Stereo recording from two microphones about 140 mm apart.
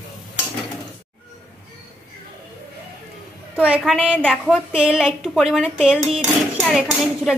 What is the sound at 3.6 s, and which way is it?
Speech, 10° right (ahead or behind).